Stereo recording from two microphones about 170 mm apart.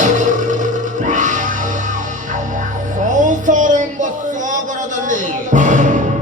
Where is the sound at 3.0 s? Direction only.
50° right (ahead or behind).